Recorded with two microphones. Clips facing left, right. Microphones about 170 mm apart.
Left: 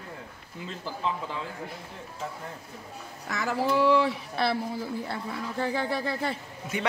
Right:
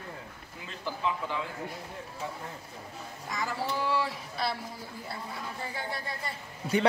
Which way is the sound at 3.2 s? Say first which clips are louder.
Left 6 dB; 75° left (ahead or behind).